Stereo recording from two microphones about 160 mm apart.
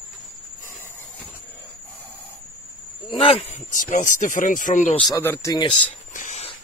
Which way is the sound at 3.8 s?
50° left (ahead or behind).